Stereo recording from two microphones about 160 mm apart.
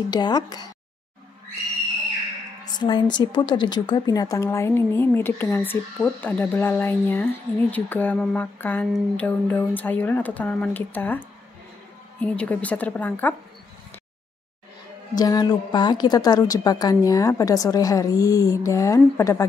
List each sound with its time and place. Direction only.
0.1 s a woman's voice: 25° left (ahead or behind)
2.8 s a woman's voice: 30° left (ahead or behind); by 13.3 s 10° left (ahead or behind)
15.1 s a woman's voice: 25° left (ahead or behind)